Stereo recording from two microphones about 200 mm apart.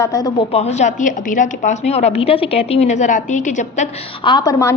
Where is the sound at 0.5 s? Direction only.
35° left (ahead or behind).